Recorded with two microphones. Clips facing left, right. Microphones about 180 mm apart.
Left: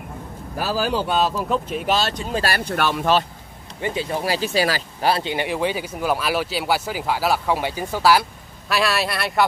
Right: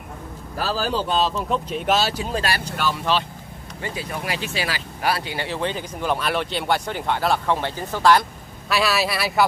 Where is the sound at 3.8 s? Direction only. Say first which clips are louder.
Left 6 dB; 25° left (ahead or behind).